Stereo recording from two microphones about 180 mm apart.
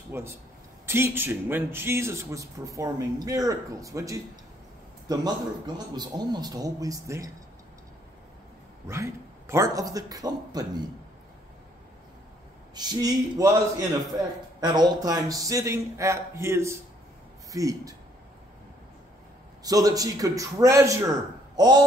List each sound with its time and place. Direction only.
0.1 s a man's voice: 15° right (ahead or behind)
8.8 s a man's voice: 15° right (ahead or behind)
12.7 s a man's voice: 20° right (ahead or behind)
19.6 s a man's voice: 20° right (ahead or behind)